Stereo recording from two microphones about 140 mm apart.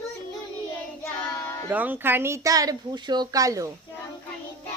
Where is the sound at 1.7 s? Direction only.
10° right (ahead or behind).